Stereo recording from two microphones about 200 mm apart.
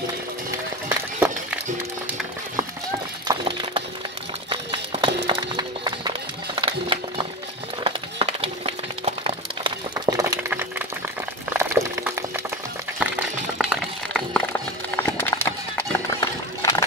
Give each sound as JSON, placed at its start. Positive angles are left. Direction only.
{"t": 0.8, "sound": "run", "side_deg": -10}
{"t": 3.3, "sound": "music", "side_deg": -25}
{"t": 4.5, "sound": "run", "side_deg": -25}
{"t": 7.8, "sound": "a sound", "side_deg": -30}
{"t": 11.5, "sound": "boiling", "side_deg": -15}
{"t": 13.0, "sound": "music", "side_deg": -5}